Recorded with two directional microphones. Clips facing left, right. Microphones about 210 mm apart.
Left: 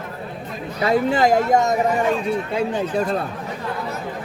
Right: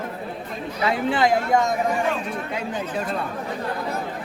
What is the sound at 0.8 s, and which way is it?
Speech, 40° left (ahead or behind).